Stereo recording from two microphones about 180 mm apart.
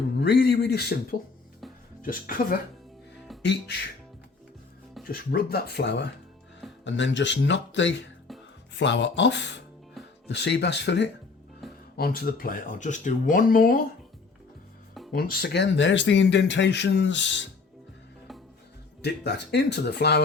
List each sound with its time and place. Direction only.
0.2 s speech: 65° left (ahead or behind)
1.6 s music: centre (ahead or behind)
2.0 s speech: 50° left (ahead or behind)
3.4 s speech: 70° left (ahead or behind)
5.0 s speech: 55° left (ahead or behind)
6.8 s speech: 85° left
11.6 s music: centre (ahead or behind)
11.9 s speech: 55° left (ahead or behind)
15.1 s speech: 60° left (ahead or behind); by 17.4 s 85° left
19.0 s speech: 70° left (ahead or behind)